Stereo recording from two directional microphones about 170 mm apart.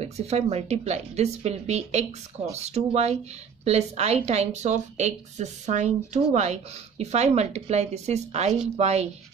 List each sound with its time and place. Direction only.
0.0 s speech: 35° right (ahead or behind)